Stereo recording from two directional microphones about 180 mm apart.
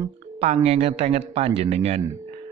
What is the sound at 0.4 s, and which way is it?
Speech, 35° right (ahead or behind).